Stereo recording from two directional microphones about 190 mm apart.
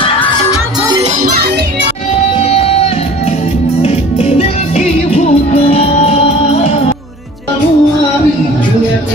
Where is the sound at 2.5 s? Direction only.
30° left (ahead or behind).